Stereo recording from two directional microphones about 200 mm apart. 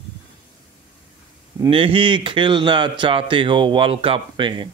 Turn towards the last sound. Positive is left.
turn(degrees=-25)  # may be behind; listen again after turning